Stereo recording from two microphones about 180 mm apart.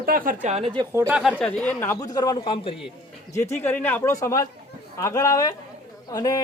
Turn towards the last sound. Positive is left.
turn(degrees=20)  # may be behind; listen again after turning